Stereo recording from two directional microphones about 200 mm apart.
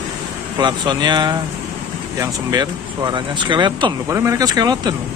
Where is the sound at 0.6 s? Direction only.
20° right (ahead or behind).